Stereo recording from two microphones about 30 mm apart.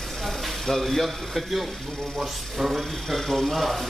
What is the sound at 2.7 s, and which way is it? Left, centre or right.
Speech, centre.